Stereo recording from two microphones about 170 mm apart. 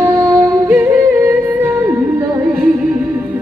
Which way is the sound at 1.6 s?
15° right (ahead or behind).